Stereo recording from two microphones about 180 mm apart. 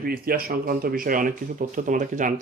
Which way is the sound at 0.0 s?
55° right (ahead or behind).